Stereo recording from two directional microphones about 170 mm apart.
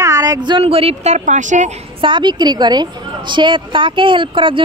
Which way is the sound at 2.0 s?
30° right (ahead or behind).